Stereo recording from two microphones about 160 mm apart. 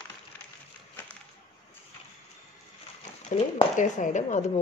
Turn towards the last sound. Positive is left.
turn(degrees=50)  # may be behind; listen again after turning